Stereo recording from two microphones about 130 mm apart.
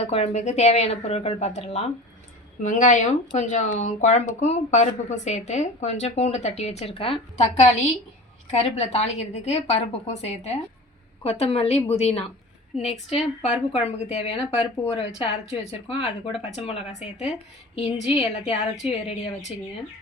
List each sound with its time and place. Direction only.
0.0 s speech: 50° left (ahead or behind)
2.6 s a woman's voice: 75° left (ahead or behind); by 16.7 s 45° left (ahead or behind)
18.1 s a woman's voice: 45° left (ahead or behind)